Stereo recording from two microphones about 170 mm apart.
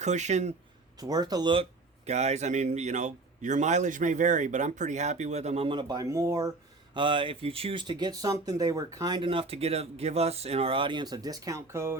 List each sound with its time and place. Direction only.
0.0 s a man's voice: 45° right (ahead or behind)
0.9 s speech: 20° right (ahead or behind)
2.0 s a man's voice: 40° right (ahead or behind); by 6.5 s 20° right (ahead or behind)
6.9 s speech: 30° right (ahead or behind)